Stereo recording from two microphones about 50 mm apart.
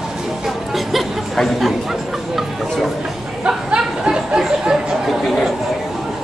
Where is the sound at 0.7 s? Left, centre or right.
Centre.